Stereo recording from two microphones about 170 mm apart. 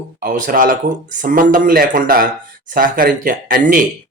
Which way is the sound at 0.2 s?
50° right (ahead or behind).